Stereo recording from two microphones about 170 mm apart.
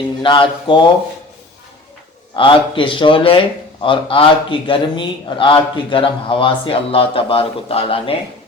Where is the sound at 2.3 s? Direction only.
30° left (ahead or behind).